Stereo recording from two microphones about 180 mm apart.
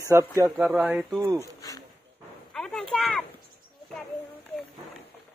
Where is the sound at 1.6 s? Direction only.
20° left (ahead or behind).